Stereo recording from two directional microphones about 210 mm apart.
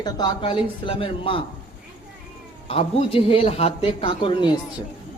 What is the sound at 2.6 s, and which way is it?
A woman's voice, 25° left (ahead or behind).